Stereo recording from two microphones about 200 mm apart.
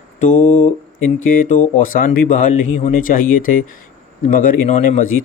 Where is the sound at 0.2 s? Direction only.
40° left (ahead or behind).